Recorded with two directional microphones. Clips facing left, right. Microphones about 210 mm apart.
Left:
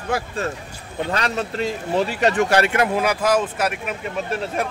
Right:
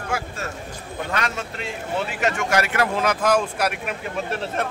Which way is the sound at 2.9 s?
10° left (ahead or behind).